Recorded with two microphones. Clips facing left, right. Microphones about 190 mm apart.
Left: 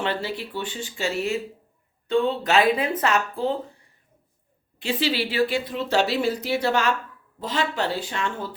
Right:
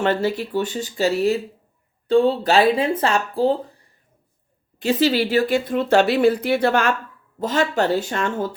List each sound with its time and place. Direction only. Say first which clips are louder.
0.0 s speech: right 7 dB; 45° right (ahead or behind)
4.8 s speech: right 7 dB; 45° right (ahead or behind)
7.3 s speech: right 6 dB; 45° right (ahead or behind)